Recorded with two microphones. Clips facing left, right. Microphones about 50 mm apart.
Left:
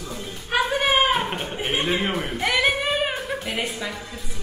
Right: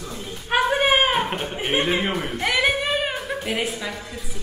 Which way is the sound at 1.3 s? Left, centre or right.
Centre.